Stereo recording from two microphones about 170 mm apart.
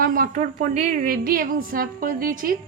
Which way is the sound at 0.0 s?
55° right (ahead or behind).